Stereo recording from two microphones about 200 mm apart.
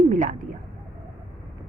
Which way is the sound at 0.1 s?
40° right (ahead or behind).